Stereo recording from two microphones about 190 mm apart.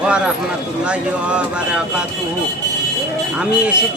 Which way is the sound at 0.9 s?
5° right (ahead or behind).